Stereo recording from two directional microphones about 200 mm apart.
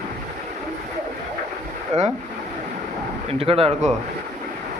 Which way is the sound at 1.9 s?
35° right (ahead or behind).